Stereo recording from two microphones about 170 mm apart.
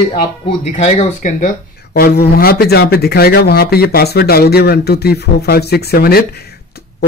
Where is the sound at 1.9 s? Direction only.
65° left (ahead or behind).